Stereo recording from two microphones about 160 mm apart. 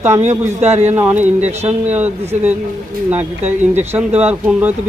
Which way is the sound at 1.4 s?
45° right (ahead or behind).